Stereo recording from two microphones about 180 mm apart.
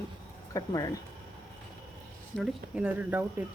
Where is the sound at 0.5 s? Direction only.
15° left (ahead or behind).